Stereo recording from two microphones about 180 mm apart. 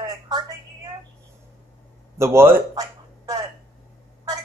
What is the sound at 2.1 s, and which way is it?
Speech, 15° right (ahead or behind).